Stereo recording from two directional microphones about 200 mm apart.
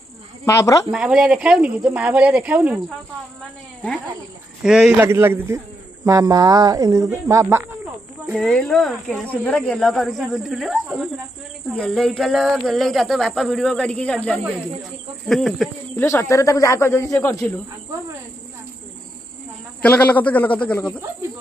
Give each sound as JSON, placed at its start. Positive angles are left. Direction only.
{"t": 0.5, "sound": "speech", "side_deg": 15}
{"t": 0.9, "sound": "speech", "side_deg": -5}
{"t": 4.6, "sound": "speech", "side_deg": -5}
{"t": 8.4, "sound": "speech", "side_deg": 5}
{"t": 16.0, "sound": "speech", "side_deg": 15}
{"t": 19.8, "sound": "speech", "side_deg": 10}